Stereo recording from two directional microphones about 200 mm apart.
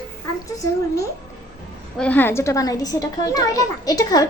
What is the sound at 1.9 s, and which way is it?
A child's voice, 5° left (ahead or behind).